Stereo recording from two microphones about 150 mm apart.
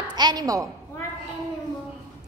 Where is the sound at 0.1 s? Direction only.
30° right (ahead or behind).